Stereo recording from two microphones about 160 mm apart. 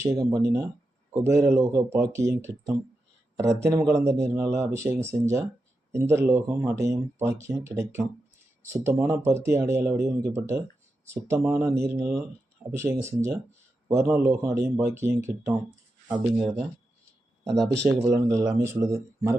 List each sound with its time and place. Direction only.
0.0 s speech: 20° right (ahead or behind)
16.4 s speech: centre (ahead or behind)
17.8 s speech: 20° right (ahead or behind)